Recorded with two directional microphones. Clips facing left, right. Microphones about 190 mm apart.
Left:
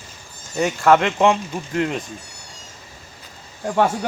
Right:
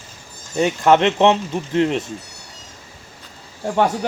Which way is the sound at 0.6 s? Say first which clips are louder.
Right 1 dB; 20° right (ahead or behind).